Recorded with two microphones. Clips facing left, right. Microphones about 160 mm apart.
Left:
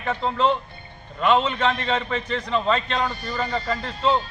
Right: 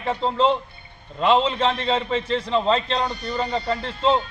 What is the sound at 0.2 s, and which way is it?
A man's voice, 30° right (ahead or behind).